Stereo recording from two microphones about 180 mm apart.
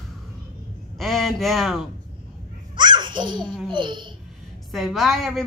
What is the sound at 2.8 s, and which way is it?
A child's voice, 25° right (ahead or behind).